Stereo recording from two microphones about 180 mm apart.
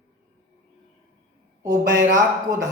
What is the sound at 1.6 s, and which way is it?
Speech, 20° right (ahead or behind).